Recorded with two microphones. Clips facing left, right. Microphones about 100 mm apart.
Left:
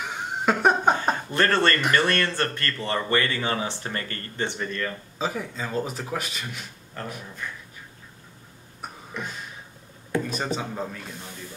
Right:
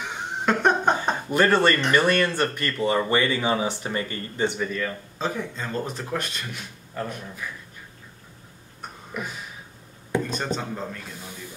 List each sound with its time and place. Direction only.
0.0 s laughter: 5° left (ahead or behind)
1.3 s speech: 10° right (ahead or behind)
5.2 s speech: 5° left (ahead or behind)
7.0 s speech: 5° right (ahead or behind)
9.1 s speech: 5° right (ahead or behind)
10.3 s speech: 5° left (ahead or behind)